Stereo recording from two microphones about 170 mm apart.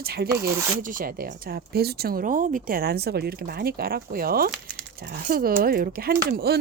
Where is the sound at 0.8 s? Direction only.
55° right (ahead or behind).